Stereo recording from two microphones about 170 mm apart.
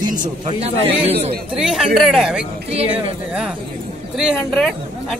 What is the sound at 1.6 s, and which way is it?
Speech, centre (ahead or behind).